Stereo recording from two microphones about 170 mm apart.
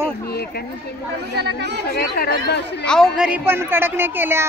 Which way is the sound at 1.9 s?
70° left (ahead or behind).